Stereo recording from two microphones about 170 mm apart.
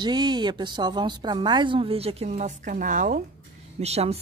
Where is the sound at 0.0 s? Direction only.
25° right (ahead or behind); by 3.2 s 50° right (ahead or behind).